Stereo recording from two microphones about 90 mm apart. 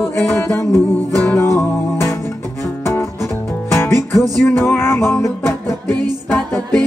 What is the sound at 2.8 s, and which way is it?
Music, 30° left (ahead or behind).